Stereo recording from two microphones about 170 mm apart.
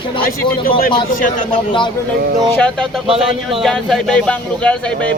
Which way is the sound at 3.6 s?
5° left (ahead or behind).